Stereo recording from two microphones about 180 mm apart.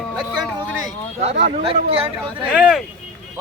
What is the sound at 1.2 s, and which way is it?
Speech, 35° right (ahead or behind).